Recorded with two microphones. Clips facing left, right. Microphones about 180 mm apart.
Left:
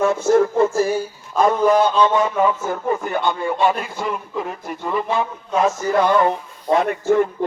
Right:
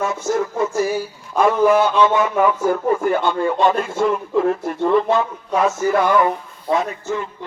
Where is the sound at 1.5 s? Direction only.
35° left (ahead or behind).